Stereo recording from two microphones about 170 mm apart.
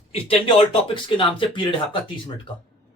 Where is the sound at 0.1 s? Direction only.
30° left (ahead or behind).